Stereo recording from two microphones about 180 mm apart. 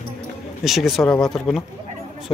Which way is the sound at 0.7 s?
Centre (ahead or behind).